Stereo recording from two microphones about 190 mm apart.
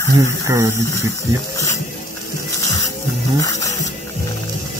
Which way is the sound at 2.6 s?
20° left (ahead or behind).